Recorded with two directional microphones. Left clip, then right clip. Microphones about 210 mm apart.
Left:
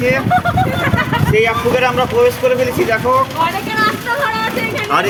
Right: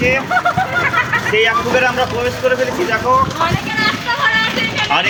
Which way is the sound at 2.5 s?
35° left (ahead or behind).